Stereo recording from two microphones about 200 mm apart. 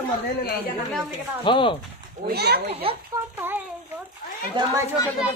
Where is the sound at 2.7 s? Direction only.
30° right (ahead or behind).